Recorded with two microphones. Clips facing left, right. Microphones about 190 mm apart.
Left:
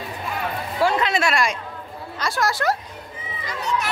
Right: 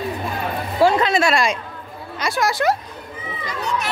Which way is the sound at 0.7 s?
35° right (ahead or behind).